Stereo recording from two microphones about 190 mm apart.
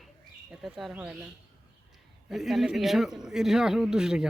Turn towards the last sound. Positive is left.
turn(degrees=-5)  # may be behind; listen again after turning